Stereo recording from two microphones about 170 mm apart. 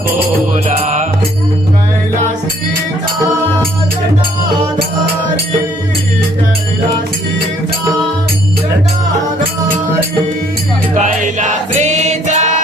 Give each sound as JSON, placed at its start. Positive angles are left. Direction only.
{"t": 0.5, "sound": "music", "side_deg": -45}
{"t": 10.9, "sound": "music", "side_deg": -50}